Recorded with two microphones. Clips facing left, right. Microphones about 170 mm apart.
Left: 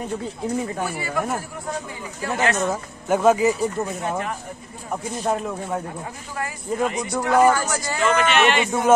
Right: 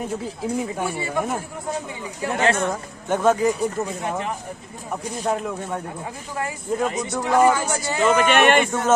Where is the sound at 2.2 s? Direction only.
20° right (ahead or behind).